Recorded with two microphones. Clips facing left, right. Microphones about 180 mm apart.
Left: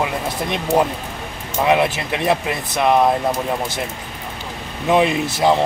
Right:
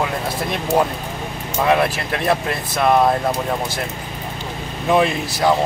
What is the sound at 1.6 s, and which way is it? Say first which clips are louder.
Speech: left 1 dB; 20° left (ahead or behind).